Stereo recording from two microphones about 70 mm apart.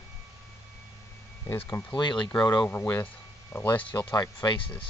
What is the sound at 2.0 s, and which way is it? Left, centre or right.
Speech, left.